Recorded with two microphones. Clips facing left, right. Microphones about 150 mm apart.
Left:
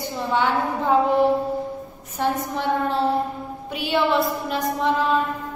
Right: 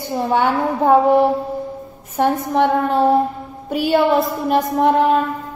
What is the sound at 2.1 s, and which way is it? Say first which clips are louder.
Speech: right 7 dB; 55° right (ahead or behind).